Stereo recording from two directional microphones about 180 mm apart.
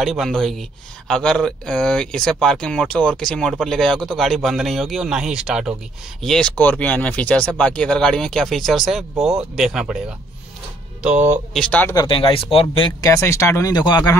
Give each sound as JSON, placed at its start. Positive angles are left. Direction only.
{"t": 0.0, "sound": "speech", "side_deg": 0}
{"t": 11.6, "sound": "speech", "side_deg": 10}
{"t": 11.9, "sound": "speech", "side_deg": 25}
{"t": 13.1, "sound": "speech", "side_deg": 15}